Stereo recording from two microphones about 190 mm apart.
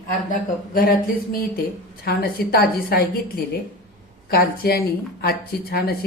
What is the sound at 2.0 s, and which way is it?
A woman's voice, 55° left (ahead or behind).